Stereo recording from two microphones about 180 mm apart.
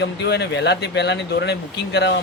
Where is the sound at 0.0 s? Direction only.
70° left (ahead or behind).